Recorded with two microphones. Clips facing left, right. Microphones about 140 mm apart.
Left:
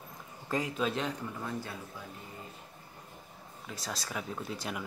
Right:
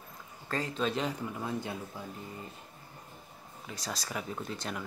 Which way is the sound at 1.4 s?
20° right (ahead or behind).